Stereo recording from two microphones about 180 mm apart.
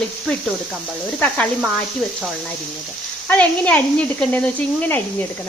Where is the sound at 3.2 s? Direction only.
10° left (ahead or behind).